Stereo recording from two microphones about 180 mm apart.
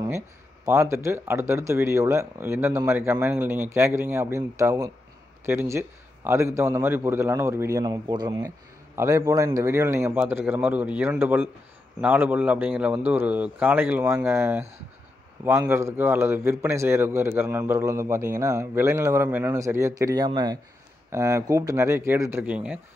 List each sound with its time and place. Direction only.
0.7 s a man's voice: 15° right (ahead or behind)